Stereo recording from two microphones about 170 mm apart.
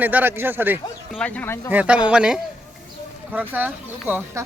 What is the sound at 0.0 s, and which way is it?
Speech, 10° right (ahead or behind).